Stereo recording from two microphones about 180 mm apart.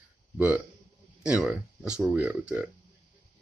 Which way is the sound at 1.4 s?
5° right (ahead or behind).